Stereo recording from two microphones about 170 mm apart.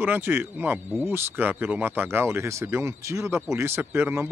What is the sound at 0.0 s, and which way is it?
Speech, 10° right (ahead or behind).